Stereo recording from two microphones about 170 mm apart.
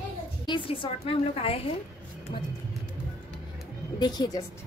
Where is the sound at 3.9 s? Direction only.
25° left (ahead or behind).